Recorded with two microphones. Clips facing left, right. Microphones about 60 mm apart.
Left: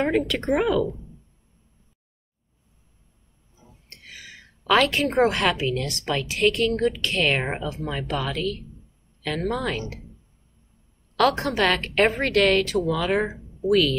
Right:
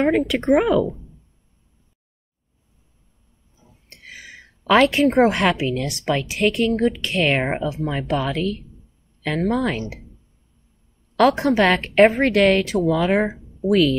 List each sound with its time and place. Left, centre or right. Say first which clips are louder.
0.3 s a woman's voice: right 5 dB; centre
3.9 s a sound: right 4 dB; centre
5.0 s a woman's voice: right 4 dB; centre
8.2 s a woman's voice: right 4 dB; centre
9.4 s a woman's voice: right 5 dB; centre
11.1 s a woman's voice: right 5 dB; centre